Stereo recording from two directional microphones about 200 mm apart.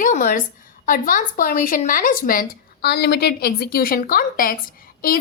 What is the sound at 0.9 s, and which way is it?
A woman's voice, 45° left (ahead or behind).